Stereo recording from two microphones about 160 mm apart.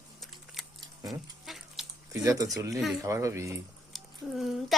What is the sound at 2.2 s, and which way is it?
Speech, 20° right (ahead or behind).